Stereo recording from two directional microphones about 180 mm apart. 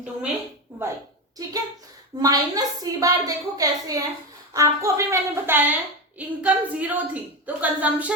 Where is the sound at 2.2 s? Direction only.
20° right (ahead or behind).